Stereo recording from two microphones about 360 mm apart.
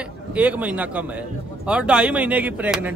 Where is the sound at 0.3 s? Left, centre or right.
Centre.